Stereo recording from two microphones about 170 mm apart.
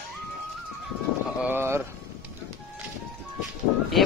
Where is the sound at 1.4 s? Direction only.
15° right (ahead or behind).